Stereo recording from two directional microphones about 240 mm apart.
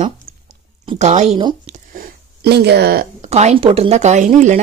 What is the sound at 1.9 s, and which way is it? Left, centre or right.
Speech, right.